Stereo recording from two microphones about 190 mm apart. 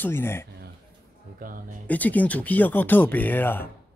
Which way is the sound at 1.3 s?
45° right (ahead or behind).